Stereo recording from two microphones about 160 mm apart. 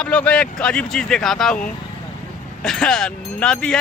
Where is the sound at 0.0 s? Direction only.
5° left (ahead or behind).